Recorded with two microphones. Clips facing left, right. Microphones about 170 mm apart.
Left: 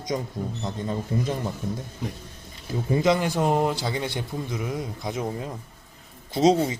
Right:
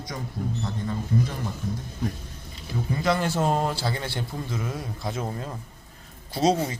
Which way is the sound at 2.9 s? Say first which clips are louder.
Left 3 dB; 20° left (ahead or behind).